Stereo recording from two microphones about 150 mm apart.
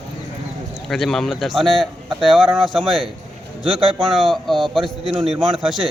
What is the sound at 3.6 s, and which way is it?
Speech, 40° right (ahead or behind).